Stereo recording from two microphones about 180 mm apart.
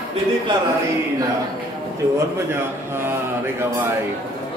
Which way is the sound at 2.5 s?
10° right (ahead or behind).